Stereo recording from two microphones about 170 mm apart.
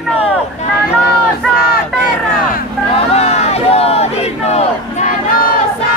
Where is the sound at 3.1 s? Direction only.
35° left (ahead or behind).